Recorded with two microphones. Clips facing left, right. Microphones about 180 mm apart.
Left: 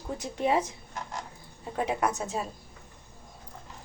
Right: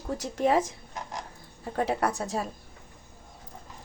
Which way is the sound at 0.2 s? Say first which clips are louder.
Right 2 dB; 45° right (ahead or behind).